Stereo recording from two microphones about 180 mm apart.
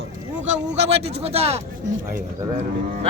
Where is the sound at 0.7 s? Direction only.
35° right (ahead or behind).